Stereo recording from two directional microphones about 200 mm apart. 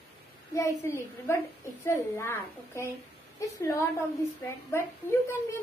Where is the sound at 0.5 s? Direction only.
15° left (ahead or behind).